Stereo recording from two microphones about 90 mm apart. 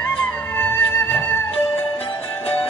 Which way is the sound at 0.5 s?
20° left (ahead or behind).